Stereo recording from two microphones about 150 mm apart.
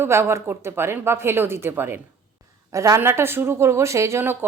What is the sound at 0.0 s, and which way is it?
Speech, 15° right (ahead or behind).